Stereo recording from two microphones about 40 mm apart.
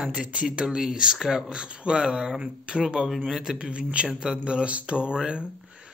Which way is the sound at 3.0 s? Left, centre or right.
Centre.